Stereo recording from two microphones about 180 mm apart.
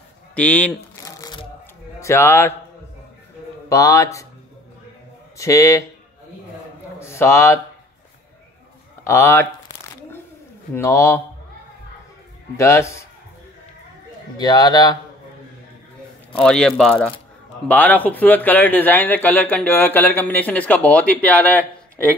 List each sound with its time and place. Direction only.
0.3 s speech: 10° left (ahead or behind)
1.0 s crushing: 20° left (ahead or behind)
2.0 s a man's voice: 15° left (ahead or behind)
3.6 s speech: 20° left (ahead or behind)
5.4 s speech: 15° left (ahead or behind)
7.0 s a man's voice: 15° left (ahead or behind)
9.0 s speech: 15° left (ahead or behind)
10.7 s speech: 15° left (ahead or behind)
12.5 s speech: 15° left (ahead or behind)
14.3 s a man's voice: 25° left (ahead or behind)
16.3 s a man's voice: 5° left (ahead or behind)